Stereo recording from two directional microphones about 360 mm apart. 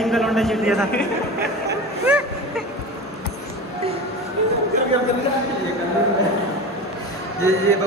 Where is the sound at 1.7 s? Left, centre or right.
Centre.